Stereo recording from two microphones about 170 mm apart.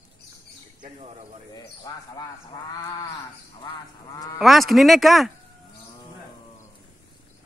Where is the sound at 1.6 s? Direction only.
25° left (ahead or behind).